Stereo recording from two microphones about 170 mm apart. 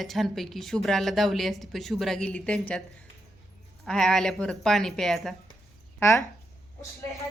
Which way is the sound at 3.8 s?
5° left (ahead or behind).